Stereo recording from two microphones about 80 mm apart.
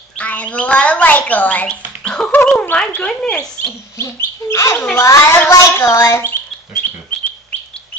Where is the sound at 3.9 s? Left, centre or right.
Left.